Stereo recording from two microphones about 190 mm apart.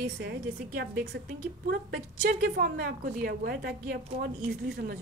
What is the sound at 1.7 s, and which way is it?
A woman's voice, 55° right (ahead or behind).